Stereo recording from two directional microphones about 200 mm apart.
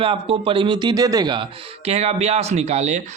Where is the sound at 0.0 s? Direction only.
25° right (ahead or behind).